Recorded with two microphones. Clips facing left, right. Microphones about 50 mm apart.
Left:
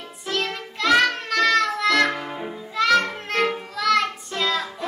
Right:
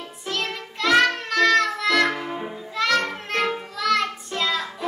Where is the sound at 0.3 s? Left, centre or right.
Centre.